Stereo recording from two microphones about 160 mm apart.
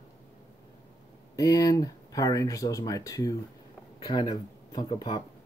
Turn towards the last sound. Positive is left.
turn(degrees=30)  # may be behind; listen again after turning